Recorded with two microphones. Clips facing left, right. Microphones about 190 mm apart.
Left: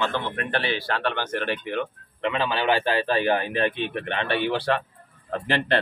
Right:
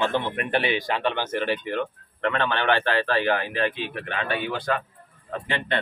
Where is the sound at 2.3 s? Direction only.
10° left (ahead or behind); by 4.2 s 25° left (ahead or behind).